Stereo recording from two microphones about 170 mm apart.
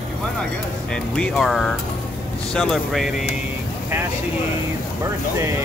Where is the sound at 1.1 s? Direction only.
5° left (ahead or behind).